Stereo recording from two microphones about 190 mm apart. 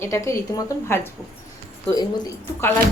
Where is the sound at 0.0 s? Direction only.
15° left (ahead or behind).